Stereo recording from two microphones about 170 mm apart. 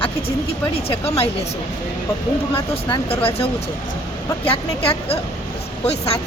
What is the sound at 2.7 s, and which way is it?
Speech, 35° left (ahead or behind).